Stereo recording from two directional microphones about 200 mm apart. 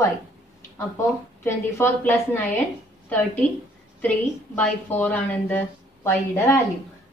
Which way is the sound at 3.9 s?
5° left (ahead or behind).